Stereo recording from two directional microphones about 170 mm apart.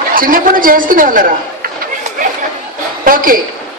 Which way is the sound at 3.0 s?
55° right (ahead or behind).